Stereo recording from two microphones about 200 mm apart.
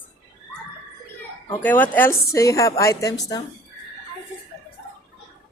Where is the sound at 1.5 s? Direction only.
10° left (ahead or behind).